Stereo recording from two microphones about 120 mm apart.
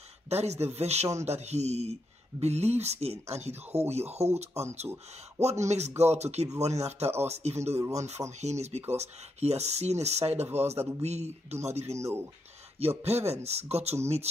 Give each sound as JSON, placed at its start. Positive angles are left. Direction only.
{"t": 0.3, "sound": "speech", "side_deg": -65}
{"t": 12.0, "sound": "speech", "side_deg": -20}
{"t": 12.7, "sound": "speech", "side_deg": -60}